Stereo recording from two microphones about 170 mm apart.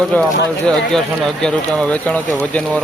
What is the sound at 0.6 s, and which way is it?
Speech, 5° left (ahead or behind).